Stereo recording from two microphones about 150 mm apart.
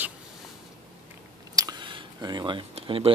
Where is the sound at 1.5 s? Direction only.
25° right (ahead or behind).